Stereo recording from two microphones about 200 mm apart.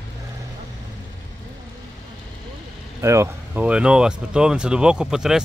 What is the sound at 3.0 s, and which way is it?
Speech, 15° right (ahead or behind).